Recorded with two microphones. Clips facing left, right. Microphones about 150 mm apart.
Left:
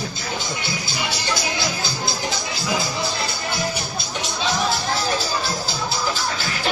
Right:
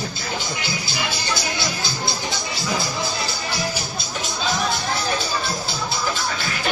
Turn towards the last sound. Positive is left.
turn(degrees=0)  # may be behind; listen again after turning